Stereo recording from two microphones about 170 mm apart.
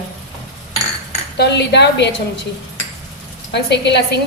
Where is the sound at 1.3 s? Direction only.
85° left.